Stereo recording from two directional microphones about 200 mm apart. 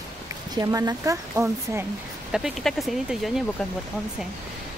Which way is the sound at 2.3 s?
Centre (ahead or behind).